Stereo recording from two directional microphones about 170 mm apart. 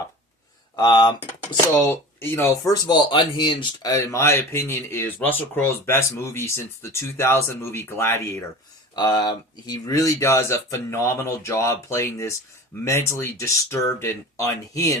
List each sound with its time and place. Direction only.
0.8 s speech: 25° left (ahead or behind)
1.9 s speech: 15° left (ahead or behind)
9.0 s speech: 25° left (ahead or behind)